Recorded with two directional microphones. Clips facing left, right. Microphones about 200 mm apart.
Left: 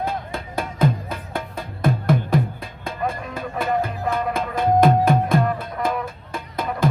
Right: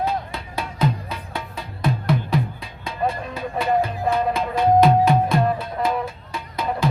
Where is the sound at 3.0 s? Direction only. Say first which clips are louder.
Right 2 dB; 30° right (ahead or behind).